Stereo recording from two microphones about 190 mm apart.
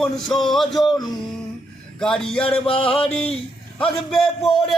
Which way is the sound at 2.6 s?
30° left (ahead or behind).